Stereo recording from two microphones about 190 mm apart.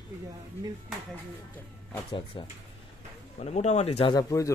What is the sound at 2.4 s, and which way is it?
Speech, 25° left (ahead or behind).